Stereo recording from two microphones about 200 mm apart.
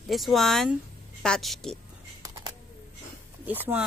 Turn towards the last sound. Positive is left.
turn(degrees=-10)  # may be behind; listen again after turning